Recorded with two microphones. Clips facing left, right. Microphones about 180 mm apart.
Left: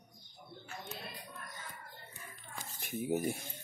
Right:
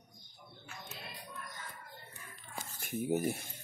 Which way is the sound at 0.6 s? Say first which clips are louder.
Left 4 dB; 35° left (ahead or behind).